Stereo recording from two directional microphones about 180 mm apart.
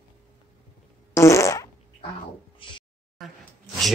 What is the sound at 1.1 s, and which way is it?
Fart, 15° left (ahead or behind).